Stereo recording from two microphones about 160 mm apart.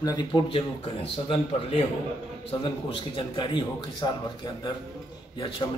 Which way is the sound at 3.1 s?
30° left (ahead or behind).